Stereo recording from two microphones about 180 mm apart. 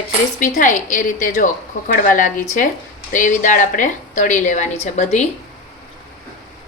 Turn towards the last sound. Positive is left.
turn(degrees=40)  # may be behind; listen again after turning